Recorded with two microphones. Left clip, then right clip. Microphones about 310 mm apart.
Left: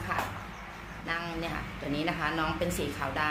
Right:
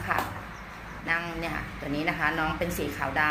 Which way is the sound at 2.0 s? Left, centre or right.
Centre.